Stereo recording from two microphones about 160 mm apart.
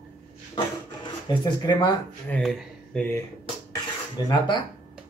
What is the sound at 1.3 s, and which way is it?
Speech, 25° left (ahead or behind).